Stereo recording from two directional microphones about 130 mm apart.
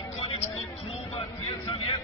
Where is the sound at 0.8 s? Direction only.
55° left (ahead or behind).